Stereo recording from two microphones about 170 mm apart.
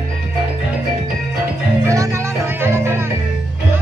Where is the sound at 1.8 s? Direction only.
20° right (ahead or behind).